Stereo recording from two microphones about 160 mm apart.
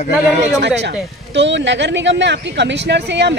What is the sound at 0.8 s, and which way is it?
Speech, 90° right.